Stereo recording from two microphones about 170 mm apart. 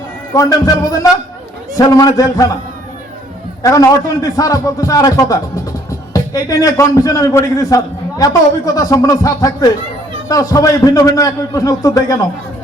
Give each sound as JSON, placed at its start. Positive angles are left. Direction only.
{"t": 0.3, "sound": "a man's voice", "side_deg": 20}
{"t": 3.6, "sound": "a man's voice", "side_deg": 20}